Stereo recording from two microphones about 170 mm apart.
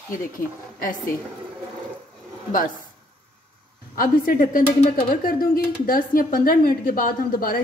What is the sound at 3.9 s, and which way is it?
A woman's voice, 55° left (ahead or behind).